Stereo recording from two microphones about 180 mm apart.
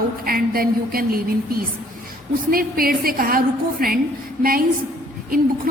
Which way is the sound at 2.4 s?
55° right (ahead or behind).